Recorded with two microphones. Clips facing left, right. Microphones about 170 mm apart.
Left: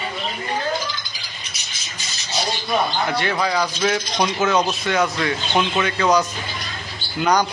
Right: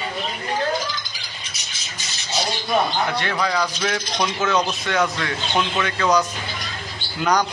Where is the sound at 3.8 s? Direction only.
10° left (ahead or behind).